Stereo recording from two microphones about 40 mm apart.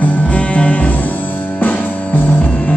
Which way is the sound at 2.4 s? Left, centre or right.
Left.